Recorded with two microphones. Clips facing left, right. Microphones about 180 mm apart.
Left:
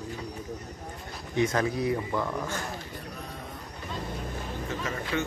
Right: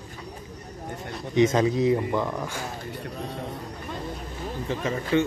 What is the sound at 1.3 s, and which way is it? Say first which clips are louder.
Speech: right 6 dB; 20° right (ahead or behind).